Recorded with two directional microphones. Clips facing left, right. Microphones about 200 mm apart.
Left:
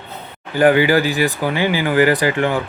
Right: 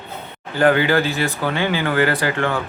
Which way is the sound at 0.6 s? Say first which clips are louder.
Left 3 dB; 15° left (ahead or behind).